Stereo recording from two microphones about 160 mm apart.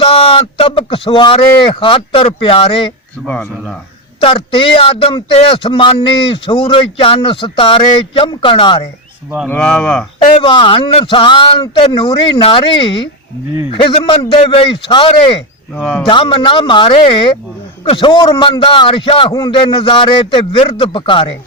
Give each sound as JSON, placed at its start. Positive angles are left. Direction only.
{"t": 0.0, "sound": "speech", "side_deg": 35}
{"t": 3.2, "sound": "speech", "side_deg": 10}
{"t": 4.2, "sound": "speech", "side_deg": 35}
{"t": 9.5, "sound": "speech", "side_deg": 5}
{"t": 10.2, "sound": "speech", "side_deg": 30}
{"t": 15.7, "sound": "speech", "side_deg": 10}
{"t": 16.0, "sound": "speech", "side_deg": 30}